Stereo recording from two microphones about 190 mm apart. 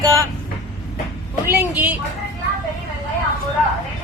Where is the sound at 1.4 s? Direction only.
15° right (ahead or behind).